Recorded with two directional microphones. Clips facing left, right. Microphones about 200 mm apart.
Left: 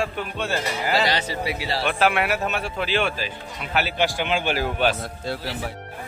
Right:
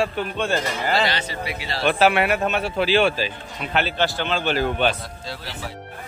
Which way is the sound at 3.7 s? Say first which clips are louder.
Right 1 dB; 10° left (ahead or behind).